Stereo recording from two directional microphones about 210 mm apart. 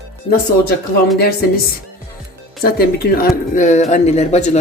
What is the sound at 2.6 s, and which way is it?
Speech, 45° left (ahead or behind).